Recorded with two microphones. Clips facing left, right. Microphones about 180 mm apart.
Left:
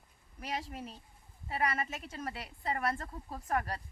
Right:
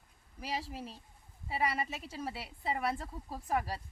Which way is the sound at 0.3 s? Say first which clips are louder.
Even; 5° right (ahead or behind).